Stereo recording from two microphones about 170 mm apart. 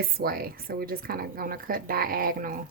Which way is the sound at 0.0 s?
60° right (ahead or behind).